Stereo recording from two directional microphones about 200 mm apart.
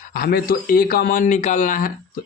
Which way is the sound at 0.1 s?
50° left (ahead or behind).